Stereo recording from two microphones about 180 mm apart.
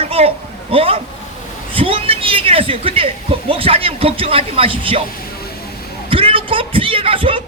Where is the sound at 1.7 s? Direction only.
30° right (ahead or behind).